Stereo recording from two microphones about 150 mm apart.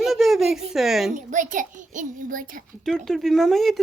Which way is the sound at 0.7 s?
Centre (ahead or behind).